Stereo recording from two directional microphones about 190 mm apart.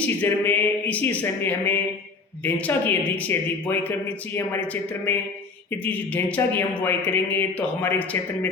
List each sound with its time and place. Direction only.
0.2 s speech: 10° left (ahead or behind)